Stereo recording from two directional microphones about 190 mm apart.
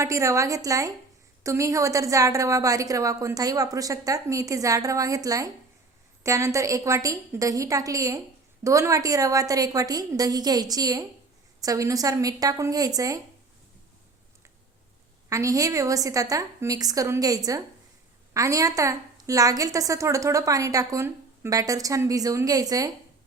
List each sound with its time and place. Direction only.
0.0 s a woman's voice: 15° right (ahead or behind)
15.3 s a woman's voice: 15° right (ahead or behind)